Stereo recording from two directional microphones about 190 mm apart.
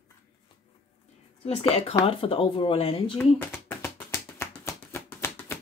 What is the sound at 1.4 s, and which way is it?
A woman's voice, 30° left (ahead or behind).